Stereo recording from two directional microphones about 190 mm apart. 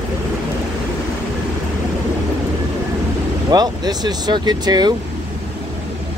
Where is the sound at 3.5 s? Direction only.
20° right (ahead or behind).